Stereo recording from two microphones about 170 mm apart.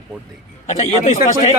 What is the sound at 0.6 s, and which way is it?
Speech, 40° left (ahead or behind).